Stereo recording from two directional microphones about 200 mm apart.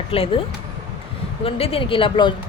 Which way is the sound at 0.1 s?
25° left (ahead or behind).